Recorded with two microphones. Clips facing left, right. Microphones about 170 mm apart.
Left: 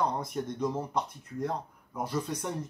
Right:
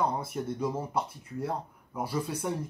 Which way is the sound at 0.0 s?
5° right (ahead or behind).